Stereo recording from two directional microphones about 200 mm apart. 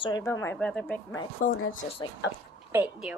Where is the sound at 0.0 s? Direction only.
15° left (ahead or behind).